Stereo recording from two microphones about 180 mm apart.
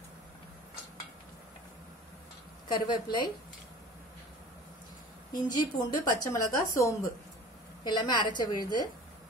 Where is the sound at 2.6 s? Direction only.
25° left (ahead or behind).